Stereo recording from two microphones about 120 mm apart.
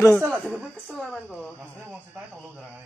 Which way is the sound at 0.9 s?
5° left (ahead or behind).